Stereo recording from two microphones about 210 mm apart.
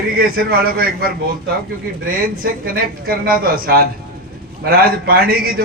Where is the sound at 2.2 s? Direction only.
45° right (ahead or behind).